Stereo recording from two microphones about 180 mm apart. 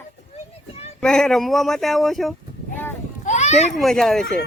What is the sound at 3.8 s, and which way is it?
Speech, centre (ahead or behind).